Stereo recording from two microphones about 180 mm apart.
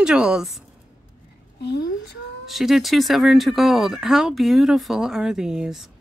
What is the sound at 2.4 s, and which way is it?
Speech, centre (ahead or behind).